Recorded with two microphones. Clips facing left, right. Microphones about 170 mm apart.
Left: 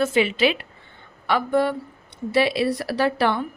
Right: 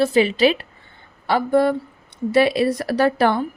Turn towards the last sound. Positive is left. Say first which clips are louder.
# right 4 dB
turn(degrees=-45)  # may be behind; listen again after turning